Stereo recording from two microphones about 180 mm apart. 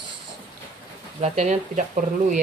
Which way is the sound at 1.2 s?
40° right (ahead or behind).